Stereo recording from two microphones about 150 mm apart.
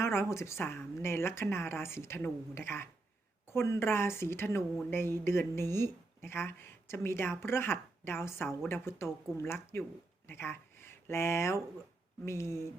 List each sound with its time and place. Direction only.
0.0 s speech: 15° left (ahead or behind)